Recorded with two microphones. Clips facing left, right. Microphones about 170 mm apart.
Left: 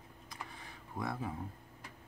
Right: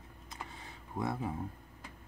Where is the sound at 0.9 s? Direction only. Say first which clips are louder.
Right 3 dB; 25° right (ahead or behind).